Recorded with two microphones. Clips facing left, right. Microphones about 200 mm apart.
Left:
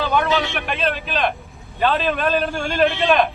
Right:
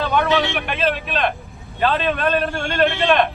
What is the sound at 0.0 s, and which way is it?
A man's voice, centre (ahead or behind).